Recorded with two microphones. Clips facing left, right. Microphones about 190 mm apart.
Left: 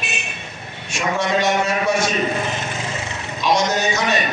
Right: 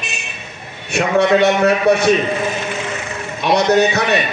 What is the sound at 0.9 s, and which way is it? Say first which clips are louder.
A man's voice: right 7 dB; 60° right (ahead or behind).